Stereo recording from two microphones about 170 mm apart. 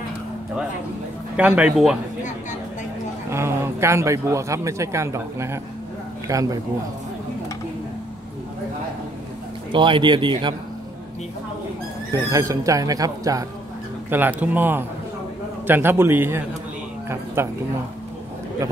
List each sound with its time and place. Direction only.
1.3 s speech: 10° right (ahead or behind)
3.3 s speech: 15° right (ahead or behind)
9.7 s speech: 30° right (ahead or behind)
12.1 s speech: 20° right (ahead or behind)